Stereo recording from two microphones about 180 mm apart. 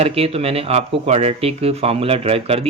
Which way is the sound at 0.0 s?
35° right (ahead or behind).